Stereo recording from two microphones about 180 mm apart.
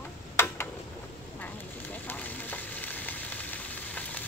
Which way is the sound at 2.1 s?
10° left (ahead or behind).